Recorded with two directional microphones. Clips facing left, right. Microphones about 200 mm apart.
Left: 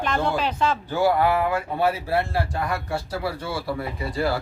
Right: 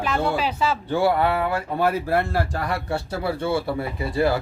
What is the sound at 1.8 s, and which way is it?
Speech, 50° right (ahead or behind).